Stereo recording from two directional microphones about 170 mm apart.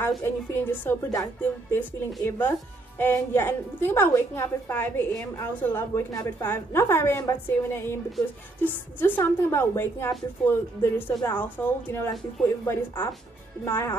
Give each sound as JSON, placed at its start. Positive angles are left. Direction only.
{"t": 0.2, "sound": "a woman's voice", "side_deg": 10}